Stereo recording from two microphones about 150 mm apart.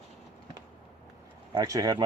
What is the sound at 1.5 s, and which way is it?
Speech, 25° right (ahead or behind).